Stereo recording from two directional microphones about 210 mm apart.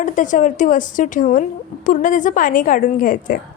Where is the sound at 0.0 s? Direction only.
40° left (ahead or behind).